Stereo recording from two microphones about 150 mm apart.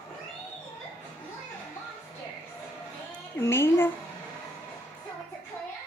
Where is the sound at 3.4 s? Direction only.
15° left (ahead or behind).